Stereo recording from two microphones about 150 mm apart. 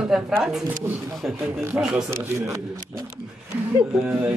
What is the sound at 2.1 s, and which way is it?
Speech, 20° right (ahead or behind).